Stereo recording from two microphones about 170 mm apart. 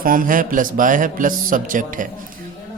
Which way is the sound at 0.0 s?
55° right (ahead or behind).